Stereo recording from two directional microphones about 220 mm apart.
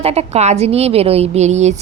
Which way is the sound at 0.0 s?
30° right (ahead or behind).